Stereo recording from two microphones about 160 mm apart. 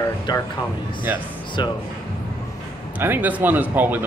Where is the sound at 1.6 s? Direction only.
25° left (ahead or behind).